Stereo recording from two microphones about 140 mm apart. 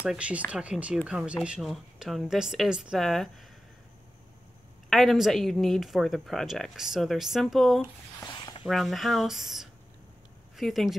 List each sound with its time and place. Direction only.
0.0 s speech: 10° right (ahead or behind)
4.8 s speech: centre (ahead or behind)
8.2 s a sound: 30° left (ahead or behind)
8.6 s speech: centre (ahead or behind)